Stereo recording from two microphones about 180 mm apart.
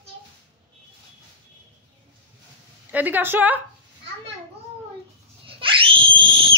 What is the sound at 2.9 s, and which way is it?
Speech, 10° right (ahead or behind).